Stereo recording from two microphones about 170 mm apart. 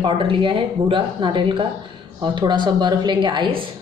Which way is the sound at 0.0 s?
30° right (ahead or behind).